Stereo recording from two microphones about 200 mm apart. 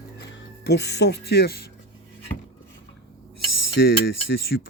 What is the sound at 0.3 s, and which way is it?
Speech, 65° left (ahead or behind).